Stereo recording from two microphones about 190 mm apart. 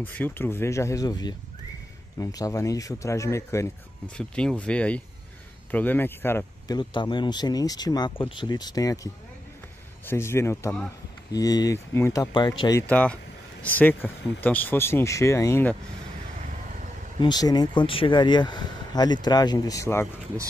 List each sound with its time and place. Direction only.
0.0 s speech: 10° left (ahead or behind)
6.8 s speech: 25° left (ahead or behind)
12.8 s speech: 5° left (ahead or behind)
17.2 s speech: 20° left (ahead or behind)